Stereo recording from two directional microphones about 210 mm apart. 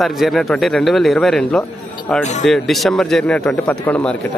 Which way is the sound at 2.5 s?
Centre (ahead or behind).